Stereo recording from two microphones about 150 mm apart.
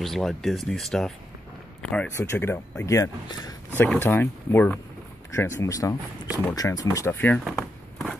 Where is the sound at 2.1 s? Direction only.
15° left (ahead or behind).